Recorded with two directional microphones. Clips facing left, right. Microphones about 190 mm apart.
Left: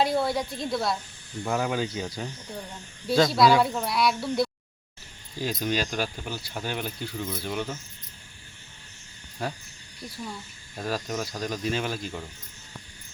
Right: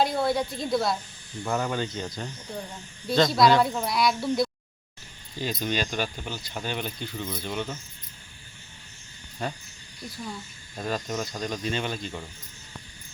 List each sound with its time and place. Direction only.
0.0 s speech: centre (ahead or behind)
9.4 s speech: 5° left (ahead or behind)
10.8 s speech: 5° left (ahead or behind)